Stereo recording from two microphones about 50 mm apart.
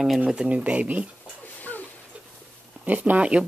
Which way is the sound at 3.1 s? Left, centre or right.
Right.